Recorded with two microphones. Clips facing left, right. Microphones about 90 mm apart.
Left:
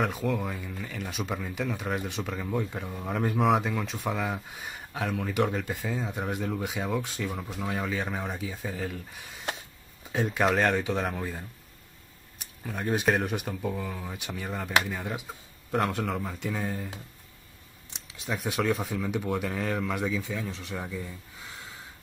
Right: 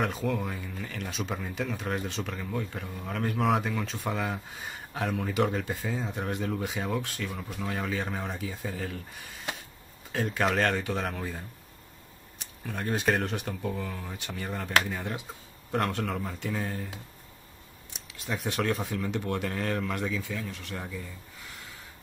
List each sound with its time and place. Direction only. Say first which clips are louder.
0.0 s speech: left 1 dB; centre (ahead or behind)
3.3 s speech: left 2 dB; 5° left (ahead or behind)
7.0 s speech: left 2 dB; 15° left (ahead or behind)
7.7 s speech: left 1 dB; centre (ahead or behind)
10.1 s speech: left 2 dB; 5° left (ahead or behind)
12.6 s speech: left 2 dB; 10° left (ahead or behind)
18.2 s speech: left 1 dB; centre (ahead or behind)
20.2 s speech: left 2 dB; 20° left (ahead or behind)